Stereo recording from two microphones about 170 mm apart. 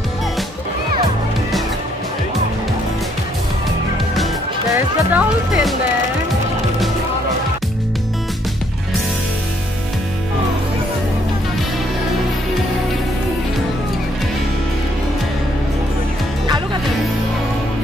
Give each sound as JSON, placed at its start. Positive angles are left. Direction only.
{"t": 4.7, "sound": "music", "side_deg": -5}